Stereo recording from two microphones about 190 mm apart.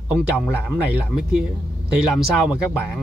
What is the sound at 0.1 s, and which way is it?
A man's voice, centre (ahead or behind).